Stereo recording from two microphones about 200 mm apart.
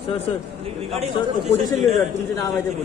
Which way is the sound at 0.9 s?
30° right (ahead or behind).